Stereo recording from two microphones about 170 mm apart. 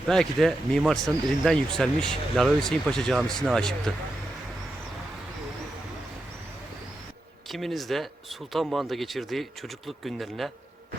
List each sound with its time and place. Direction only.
0.1 s speech: centre (ahead or behind)
7.5 s speech: centre (ahead or behind)